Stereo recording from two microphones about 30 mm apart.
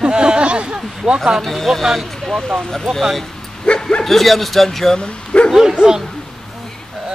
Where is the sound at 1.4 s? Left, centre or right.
Centre.